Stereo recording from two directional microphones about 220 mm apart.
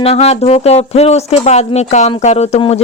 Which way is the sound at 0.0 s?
30° left (ahead or behind).